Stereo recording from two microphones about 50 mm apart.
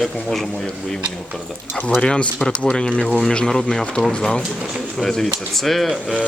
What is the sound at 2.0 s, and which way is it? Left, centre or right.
Speech, left.